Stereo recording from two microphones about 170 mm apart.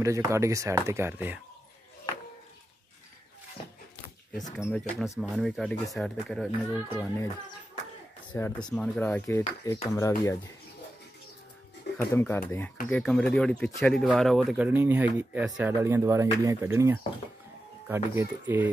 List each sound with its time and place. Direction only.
0.0 s speech: 20° right (ahead or behind)
4.6 s speech: 5° left (ahead or behind)
8.4 s speech: 10° left (ahead or behind)
9.0 s speech: 15° left (ahead or behind)
12.0 s speech: 15° left (ahead or behind); by 18.7 s 10° right (ahead or behind)